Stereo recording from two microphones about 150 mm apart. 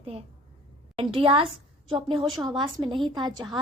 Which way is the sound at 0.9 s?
35° right (ahead or behind).